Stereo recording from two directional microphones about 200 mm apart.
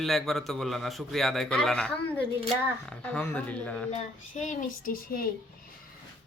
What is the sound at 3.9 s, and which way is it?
A child's voice, 40° left (ahead or behind).